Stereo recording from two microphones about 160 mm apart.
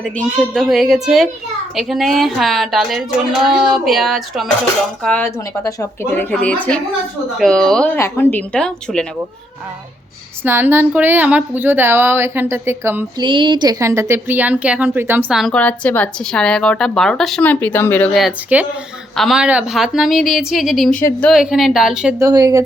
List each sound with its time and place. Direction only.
0.0 s speech: centre (ahead or behind)
5.0 s speech: 10° left (ahead or behind)
7.9 s speech: 15° left (ahead or behind)
10.4 s speech: 15° right (ahead or behind)
13.1 s speech: 30° right (ahead or behind); by 15.4 s 10° right (ahead or behind)
15.4 s speech: 5° left (ahead or behind)
18.1 s speech: 5° right (ahead or behind)
22.2 s speech: 20° right (ahead or behind)